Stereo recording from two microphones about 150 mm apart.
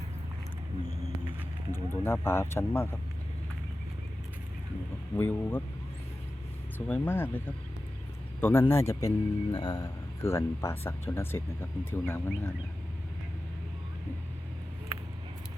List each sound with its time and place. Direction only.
1.7 s a man's voice: 15° left (ahead or behind)
5.1 s a man's voice: 10° left (ahead or behind)
6.7 s a man's voice: 10° left (ahead or behind)